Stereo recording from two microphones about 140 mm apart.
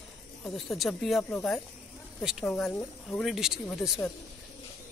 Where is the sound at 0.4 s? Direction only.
Centre (ahead or behind).